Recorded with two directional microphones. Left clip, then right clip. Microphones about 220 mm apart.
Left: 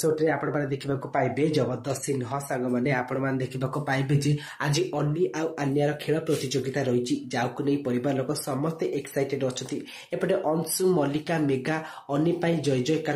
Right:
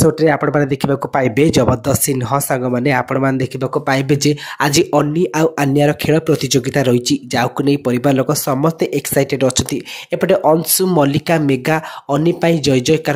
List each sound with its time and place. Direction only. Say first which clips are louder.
0.0 s speech: right 11 dB; 45° right (ahead or behind)